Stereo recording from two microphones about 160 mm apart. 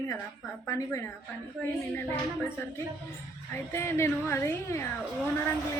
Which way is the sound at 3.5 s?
15° left (ahead or behind).